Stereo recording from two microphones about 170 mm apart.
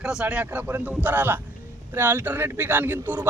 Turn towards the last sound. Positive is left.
turn(degrees=-10)  # may be behind; listen again after turning